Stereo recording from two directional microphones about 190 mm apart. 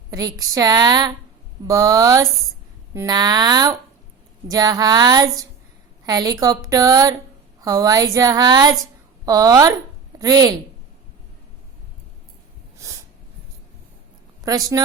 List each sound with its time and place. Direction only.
0.1 s a woman's voice: 20° right (ahead or behind)
14.4 s a woman's voice: 20° right (ahead or behind)